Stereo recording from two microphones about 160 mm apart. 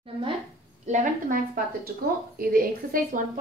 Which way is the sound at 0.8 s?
55° right (ahead or behind).